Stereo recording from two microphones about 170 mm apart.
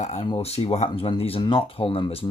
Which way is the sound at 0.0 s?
45° left (ahead or behind).